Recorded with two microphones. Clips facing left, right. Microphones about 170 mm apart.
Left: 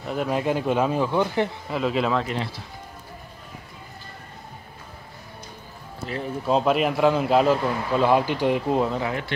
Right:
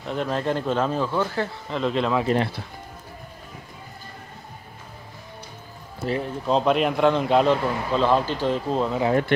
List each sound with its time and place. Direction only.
0.0 s speech: 5° left (ahead or behind)
1.7 s a man's voice: 5° left (ahead or behind)
2.3 s speech: 60° right (ahead or behind)
6.2 s a man's voice: 5° left (ahead or behind)